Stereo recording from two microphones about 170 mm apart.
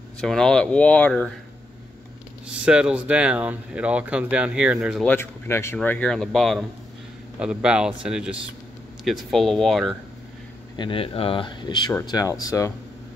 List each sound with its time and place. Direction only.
0.2 s speech: 5° left (ahead or behind)
2.4 s speech: 5° right (ahead or behind)
5.0 s speech: 15° left (ahead or behind)
10.8 s speech: 30° left (ahead or behind)